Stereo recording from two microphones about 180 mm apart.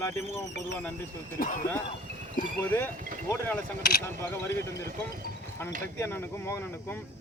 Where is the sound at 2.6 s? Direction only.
10° left (ahead or behind).